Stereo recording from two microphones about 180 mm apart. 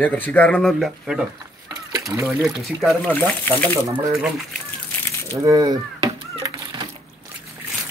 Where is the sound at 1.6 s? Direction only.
20° right (ahead or behind).